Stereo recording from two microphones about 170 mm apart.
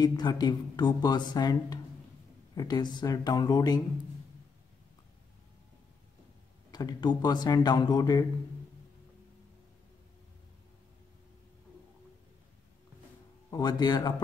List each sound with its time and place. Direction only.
0.0 s speech: 25° left (ahead or behind)
6.7 s speech: 25° left (ahead or behind)
13.5 s speech: 25° left (ahead or behind)